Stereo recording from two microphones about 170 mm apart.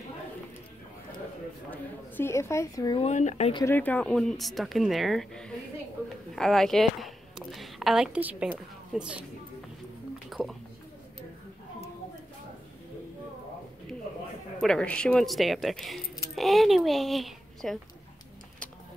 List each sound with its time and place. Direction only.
1.7 s a woman's voice: 15° left (ahead or behind)
3.0 s speech: 45° left (ahead or behind)
3.6 s speech: 10° left (ahead or behind); by 9.2 s 5° right (ahead or behind)
10.1 s a sound: centre (ahead or behind)
14.6 s speech: 5° left (ahead or behind)